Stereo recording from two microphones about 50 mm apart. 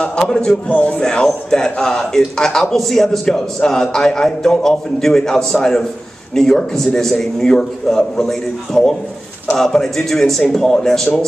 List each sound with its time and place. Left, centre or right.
0.0 s a man's voice: centre
0.7 s speech: left
1.0 s a man's voice: centre